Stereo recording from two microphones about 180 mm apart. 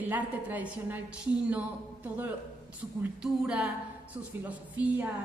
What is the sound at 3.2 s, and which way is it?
A woman's voice, 5° right (ahead or behind).